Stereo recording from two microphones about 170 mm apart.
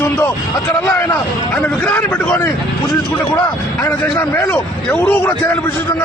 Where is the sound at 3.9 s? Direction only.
15° left (ahead or behind).